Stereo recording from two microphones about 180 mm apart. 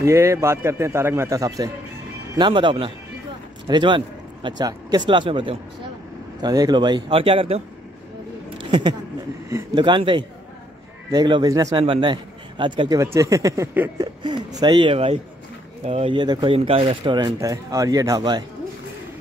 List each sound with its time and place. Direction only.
0.0 s a man's voice: 15° right (ahead or behind); by 7.6 s 30° right (ahead or behind)
8.5 s a sound: 25° right (ahead or behind)
9.8 s speech: 25° right (ahead or behind)